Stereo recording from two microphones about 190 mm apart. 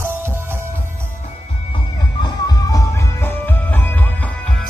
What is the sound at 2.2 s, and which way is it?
Music, 15° left (ahead or behind).